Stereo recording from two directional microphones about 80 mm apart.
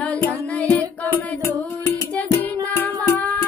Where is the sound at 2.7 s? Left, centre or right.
Left.